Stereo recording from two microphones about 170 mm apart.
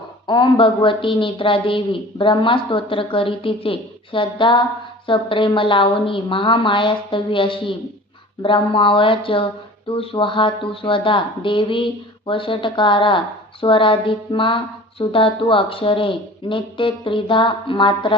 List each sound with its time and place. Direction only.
0.3 s a woman's voice: 25° left (ahead or behind)